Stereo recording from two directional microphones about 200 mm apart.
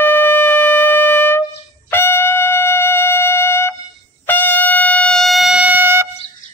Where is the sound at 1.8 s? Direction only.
10° left (ahead or behind).